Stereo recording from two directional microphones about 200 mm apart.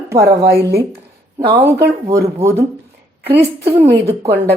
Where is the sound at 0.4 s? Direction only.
55° right (ahead or behind).